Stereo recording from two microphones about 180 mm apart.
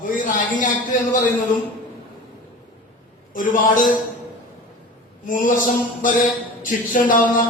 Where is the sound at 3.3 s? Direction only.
50° left (ahead or behind).